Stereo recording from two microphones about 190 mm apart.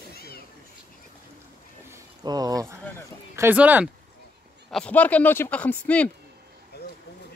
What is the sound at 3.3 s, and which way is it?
Speech, 10° right (ahead or behind).